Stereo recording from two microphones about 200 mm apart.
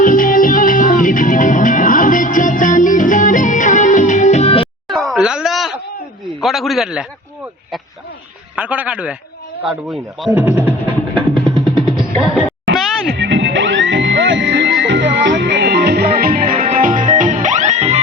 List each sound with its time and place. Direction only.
0.0 s music: 40° left (ahead or behind)
4.9 s groan: centre (ahead or behind)
6.4 s a sound: centre (ahead or behind)
8.5 s a man's voice: 5° right (ahead or behind)
11.7 s music: 25° right (ahead or behind)
13.1 s music: 65° right (ahead or behind); by 18.0 s 35° right (ahead or behind)